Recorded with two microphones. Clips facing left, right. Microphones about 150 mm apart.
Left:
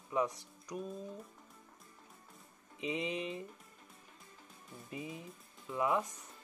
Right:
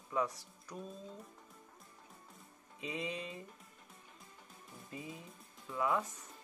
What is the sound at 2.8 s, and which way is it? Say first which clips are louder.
Speech: left 4 dB; 20° left (ahead or behind).